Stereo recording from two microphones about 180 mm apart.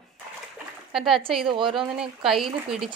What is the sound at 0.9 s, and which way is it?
Speech, centre (ahead or behind).